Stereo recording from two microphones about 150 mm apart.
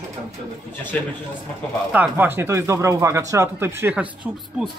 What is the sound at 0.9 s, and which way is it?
Speech, 10° left (ahead or behind).